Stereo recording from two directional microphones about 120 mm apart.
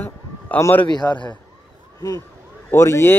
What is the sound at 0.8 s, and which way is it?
Speech, 35° left (ahead or behind).